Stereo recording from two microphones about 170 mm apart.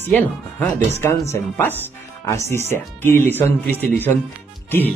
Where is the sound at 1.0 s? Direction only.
15° left (ahead or behind).